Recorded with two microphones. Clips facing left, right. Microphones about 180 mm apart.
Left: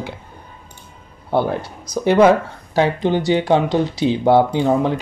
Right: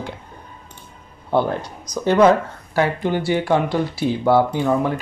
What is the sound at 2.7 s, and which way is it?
Speech, 25° left (ahead or behind).